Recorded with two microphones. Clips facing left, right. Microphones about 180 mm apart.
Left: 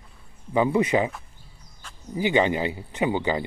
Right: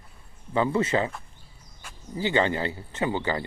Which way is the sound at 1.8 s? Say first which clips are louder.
Even; 10° right (ahead or behind).